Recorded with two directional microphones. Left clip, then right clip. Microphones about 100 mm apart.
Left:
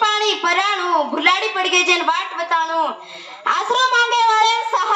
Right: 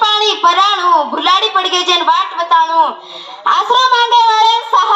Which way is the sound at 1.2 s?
25° right (ahead or behind).